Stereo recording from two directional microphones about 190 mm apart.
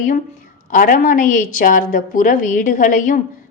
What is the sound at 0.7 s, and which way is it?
Speech, 45° left (ahead or behind).